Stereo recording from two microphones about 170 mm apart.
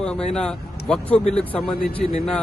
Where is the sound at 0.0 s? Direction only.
5° left (ahead or behind).